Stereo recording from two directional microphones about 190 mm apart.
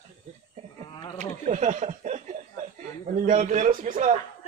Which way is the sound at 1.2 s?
40° right (ahead or behind).